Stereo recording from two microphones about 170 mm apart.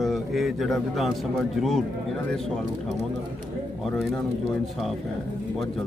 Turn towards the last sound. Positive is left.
turn(degrees=0)  # may be behind; listen again after turning